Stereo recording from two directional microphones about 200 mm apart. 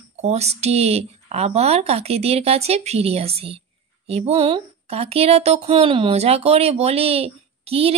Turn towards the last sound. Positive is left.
turn(degrees=-30)  # may be behind; listen again after turning